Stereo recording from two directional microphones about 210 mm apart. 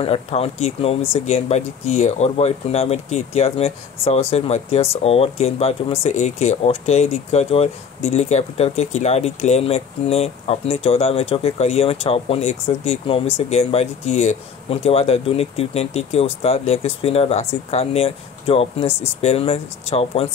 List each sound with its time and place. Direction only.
0.0 s speech: 30° left (ahead or behind)